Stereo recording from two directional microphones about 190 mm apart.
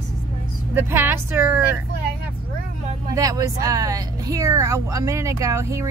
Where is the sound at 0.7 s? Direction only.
10° right (ahead or behind).